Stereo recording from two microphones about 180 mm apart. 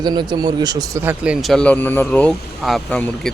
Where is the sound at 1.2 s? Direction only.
5° right (ahead or behind).